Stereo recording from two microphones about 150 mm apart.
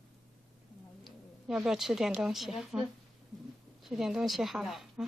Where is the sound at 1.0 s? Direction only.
5° right (ahead or behind).